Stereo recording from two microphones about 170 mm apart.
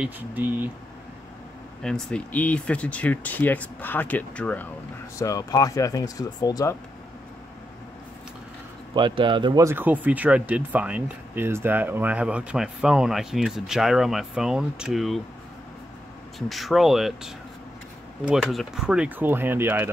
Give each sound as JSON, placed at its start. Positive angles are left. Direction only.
{"t": 0.0, "sound": "speech", "side_deg": -10}
{"t": 1.8, "sound": "speech", "side_deg": 5}
{"t": 5.2, "sound": "speech", "side_deg": 20}
{"t": 8.9, "sound": "speech", "side_deg": -30}
{"t": 16.3, "sound": "speech", "side_deg": 0}